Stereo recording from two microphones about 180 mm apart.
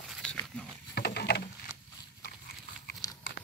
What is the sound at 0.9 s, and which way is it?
Rowboat, 60° left (ahead or behind).